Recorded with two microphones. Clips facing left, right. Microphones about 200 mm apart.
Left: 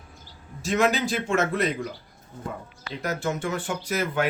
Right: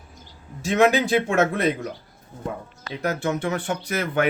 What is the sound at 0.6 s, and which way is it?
Speech, 60° right (ahead or behind).